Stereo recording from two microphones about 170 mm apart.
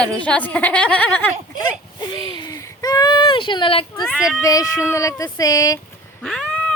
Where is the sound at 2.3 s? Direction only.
25° left (ahead or behind).